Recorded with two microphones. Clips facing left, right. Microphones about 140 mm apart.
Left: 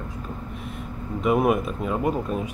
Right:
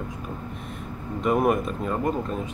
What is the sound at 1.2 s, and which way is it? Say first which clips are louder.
Speech: left 1 dB; 5° left (ahead or behind).